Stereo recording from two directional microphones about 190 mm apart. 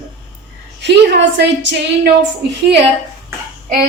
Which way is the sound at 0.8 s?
65° right (ahead or behind).